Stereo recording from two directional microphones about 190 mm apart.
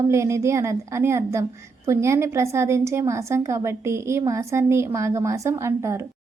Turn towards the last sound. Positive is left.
turn(degrees=-15)  # may be behind; listen again after turning